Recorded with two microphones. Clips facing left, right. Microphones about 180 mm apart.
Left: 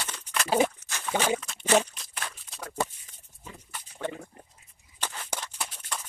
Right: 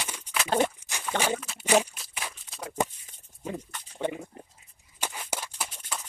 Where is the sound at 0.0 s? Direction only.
10° right (ahead or behind).